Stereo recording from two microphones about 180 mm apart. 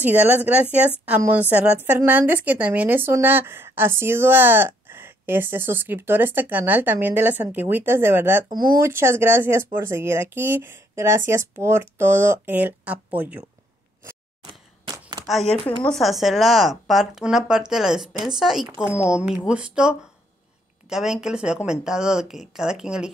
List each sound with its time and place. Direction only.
0.0 s speech: 10° right (ahead or behind)
14.9 s a sound: 20° right (ahead or behind)
15.9 s speech: centre (ahead or behind)